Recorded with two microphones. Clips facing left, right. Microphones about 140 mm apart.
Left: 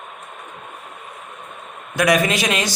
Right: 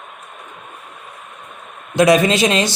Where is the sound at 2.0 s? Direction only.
25° right (ahead or behind).